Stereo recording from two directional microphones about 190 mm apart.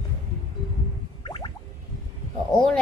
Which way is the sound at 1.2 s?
25° left (ahead or behind).